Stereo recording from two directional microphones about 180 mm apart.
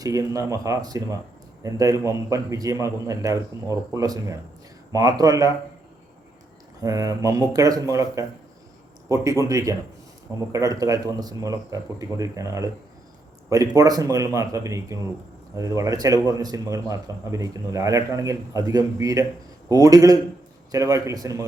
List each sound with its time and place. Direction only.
0.0 s a man's voice: 20° right (ahead or behind)
6.8 s a man's voice: 20° right (ahead or behind)